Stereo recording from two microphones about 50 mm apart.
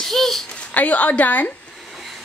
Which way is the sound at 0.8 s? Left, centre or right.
Left.